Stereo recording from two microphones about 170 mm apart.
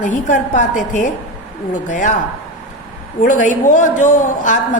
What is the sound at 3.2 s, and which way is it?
A woman's voice, 50° left (ahead or behind).